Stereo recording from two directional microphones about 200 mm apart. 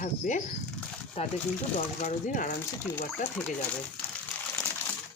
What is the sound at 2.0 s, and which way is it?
Speech, 40° left (ahead or behind).